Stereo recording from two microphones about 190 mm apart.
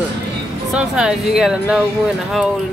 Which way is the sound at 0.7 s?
5° right (ahead or behind).